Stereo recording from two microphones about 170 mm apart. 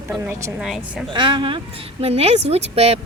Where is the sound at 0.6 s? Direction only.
Centre (ahead or behind).